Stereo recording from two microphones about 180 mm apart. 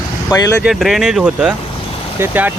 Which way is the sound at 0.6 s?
Centre (ahead or behind).